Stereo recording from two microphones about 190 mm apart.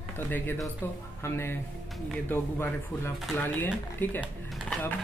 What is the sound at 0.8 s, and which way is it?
Speech, 10° left (ahead or behind).